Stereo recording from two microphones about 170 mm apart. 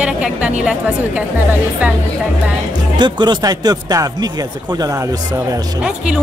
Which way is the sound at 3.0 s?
25° right (ahead or behind).